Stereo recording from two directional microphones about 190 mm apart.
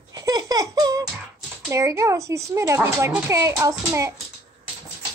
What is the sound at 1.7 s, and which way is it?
A child's voice, 15° right (ahead or behind).